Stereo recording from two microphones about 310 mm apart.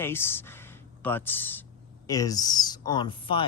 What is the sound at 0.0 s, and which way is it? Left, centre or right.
A man's voice, centre.